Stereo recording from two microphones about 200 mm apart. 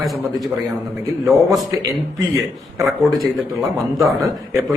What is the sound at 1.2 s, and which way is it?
Speech, centre (ahead or behind).